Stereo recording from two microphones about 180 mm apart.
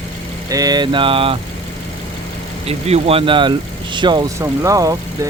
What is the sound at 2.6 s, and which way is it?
Speech, 35° right (ahead or behind).